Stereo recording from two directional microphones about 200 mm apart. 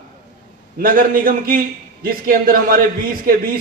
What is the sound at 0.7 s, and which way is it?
A man's voice, 45° right (ahead or behind).